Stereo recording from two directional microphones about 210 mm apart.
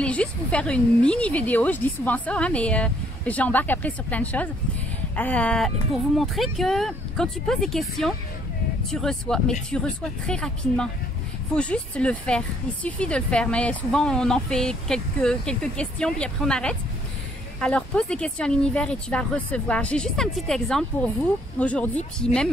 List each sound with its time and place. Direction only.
0.0 s a woman's voice: 5° left (ahead or behind)